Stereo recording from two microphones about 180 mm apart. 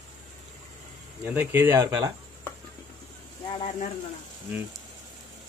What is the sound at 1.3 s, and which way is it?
Speech, 10° right (ahead or behind).